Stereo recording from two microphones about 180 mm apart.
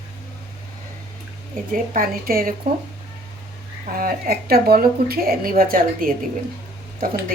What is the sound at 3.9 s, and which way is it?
Speech, 50° right (ahead or behind).